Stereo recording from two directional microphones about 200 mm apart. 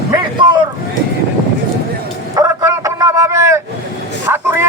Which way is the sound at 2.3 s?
15° right (ahead or behind).